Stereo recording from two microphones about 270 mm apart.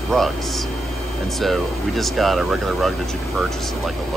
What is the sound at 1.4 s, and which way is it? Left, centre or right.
Speech, centre.